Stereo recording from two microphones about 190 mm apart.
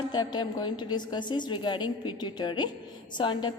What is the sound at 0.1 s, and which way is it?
A woman's voice, 25° left (ahead or behind).